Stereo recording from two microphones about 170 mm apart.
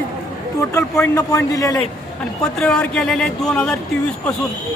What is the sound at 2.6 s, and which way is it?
Speech, 5° left (ahead or behind).